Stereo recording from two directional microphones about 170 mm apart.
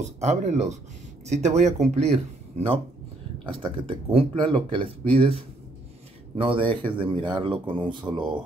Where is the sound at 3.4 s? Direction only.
30° right (ahead or behind).